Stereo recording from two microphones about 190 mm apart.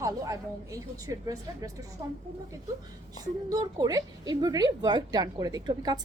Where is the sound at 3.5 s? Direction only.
20° right (ahead or behind).